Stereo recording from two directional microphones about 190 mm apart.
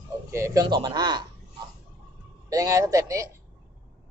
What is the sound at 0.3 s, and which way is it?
Speech, 15° right (ahead or behind).